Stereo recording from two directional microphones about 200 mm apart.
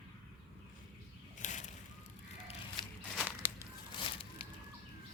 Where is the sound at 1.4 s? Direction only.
35° left (ahead or behind).